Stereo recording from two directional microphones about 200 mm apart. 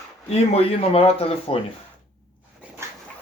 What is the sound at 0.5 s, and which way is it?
Speech, 30° left (ahead or behind).